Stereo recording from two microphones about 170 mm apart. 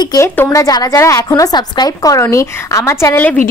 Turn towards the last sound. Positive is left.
turn(degrees=10)  # may be behind; listen again after turning